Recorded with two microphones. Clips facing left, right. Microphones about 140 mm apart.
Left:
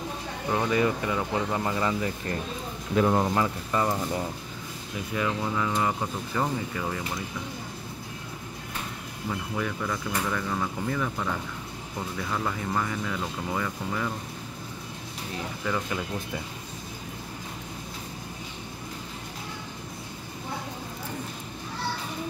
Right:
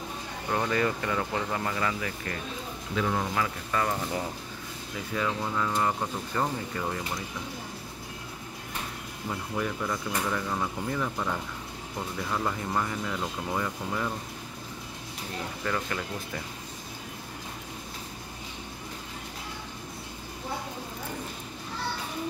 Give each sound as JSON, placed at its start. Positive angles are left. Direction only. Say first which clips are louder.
{"t": 0.5, "sound": "speech", "louder": "left 3 dB", "side_deg": 10}
{"t": 2.9, "sound": "speech", "louder": "left 6 dB", "side_deg": 45}
{"t": 3.3, "sound": "speech", "louder": "left 3 dB", "side_deg": 20}
{"t": 5.1, "sound": "speech", "louder": "left 2 dB", "side_deg": 5}
{"t": 9.3, "sound": "speech", "louder": "left 1 dB", "side_deg": -5}
{"t": 15.6, "sound": "speech", "louder": "left 2 dB", "side_deg": 10}